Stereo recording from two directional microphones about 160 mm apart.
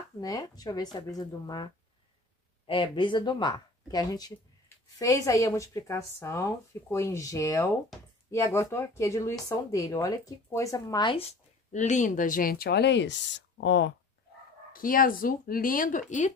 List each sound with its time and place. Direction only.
0.2 s speech: 25° left (ahead or behind)
11.7 s speech: 50° left (ahead or behind); by 13.7 s 90° left
14.7 s speech: 60° left (ahead or behind)